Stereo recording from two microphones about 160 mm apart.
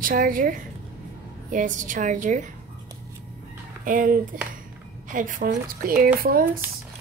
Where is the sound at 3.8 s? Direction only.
60° right (ahead or behind).